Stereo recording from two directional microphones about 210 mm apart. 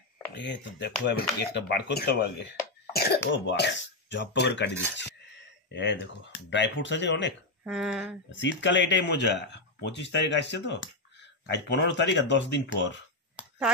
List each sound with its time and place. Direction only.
0.3 s speech: 55° left (ahead or behind)
2.9 s cough: 50° left (ahead or behind)
3.3 s speech: 55° left (ahead or behind)
7.6 s speech: 5° right (ahead or behind)
8.4 s speech: 60° left (ahead or behind)